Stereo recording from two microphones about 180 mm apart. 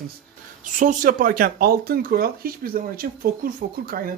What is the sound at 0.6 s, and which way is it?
Speech, 45° right (ahead or behind).